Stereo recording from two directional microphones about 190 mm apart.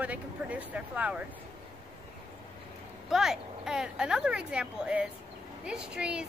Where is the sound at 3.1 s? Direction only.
Centre (ahead or behind).